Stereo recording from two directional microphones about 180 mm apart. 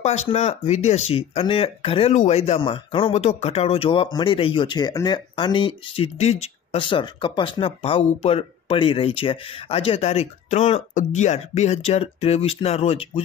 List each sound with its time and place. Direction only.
0.0 s speech: 40° left (ahead or behind)